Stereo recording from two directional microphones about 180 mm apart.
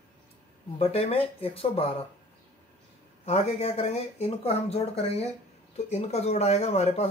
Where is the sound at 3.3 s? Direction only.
35° left (ahead or behind).